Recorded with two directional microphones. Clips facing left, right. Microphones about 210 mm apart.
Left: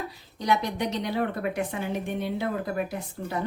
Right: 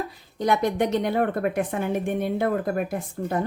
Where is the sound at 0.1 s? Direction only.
50° right (ahead or behind).